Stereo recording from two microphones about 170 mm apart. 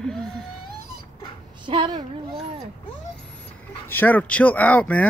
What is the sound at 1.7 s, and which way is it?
Speech, 30° right (ahead or behind).